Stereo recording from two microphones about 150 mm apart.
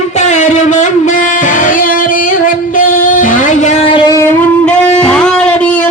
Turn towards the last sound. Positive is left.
turn(degrees=10)  # may be behind; listen again after turning